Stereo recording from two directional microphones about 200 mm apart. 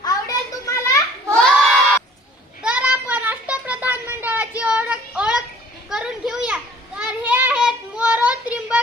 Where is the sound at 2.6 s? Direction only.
5° right (ahead or behind).